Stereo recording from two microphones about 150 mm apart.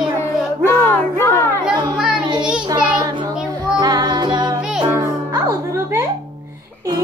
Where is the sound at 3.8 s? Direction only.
25° right (ahead or behind).